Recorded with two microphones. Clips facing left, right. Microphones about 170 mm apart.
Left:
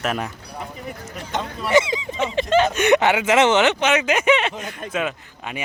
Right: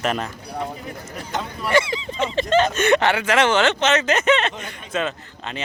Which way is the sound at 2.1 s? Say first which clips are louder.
Even; 10° left (ahead or behind).